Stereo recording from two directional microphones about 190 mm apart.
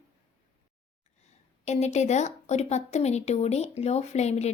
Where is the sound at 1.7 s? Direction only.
35° left (ahead or behind).